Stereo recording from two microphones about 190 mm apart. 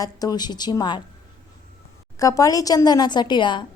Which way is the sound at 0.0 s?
20° left (ahead or behind).